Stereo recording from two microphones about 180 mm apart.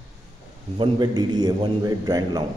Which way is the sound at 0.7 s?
25° right (ahead or behind).